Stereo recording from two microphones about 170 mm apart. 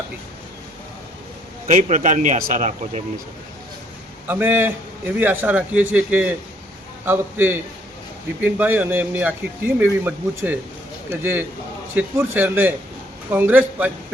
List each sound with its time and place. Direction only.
1.6 s a man's voice: 45° right (ahead or behind)
4.3 s speech: 10° right (ahead or behind)